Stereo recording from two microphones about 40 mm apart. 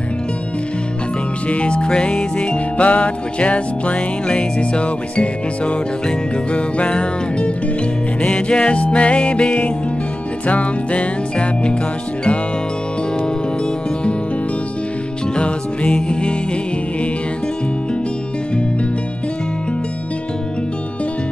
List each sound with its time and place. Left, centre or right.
1.5 s music: left
15.3 s music: left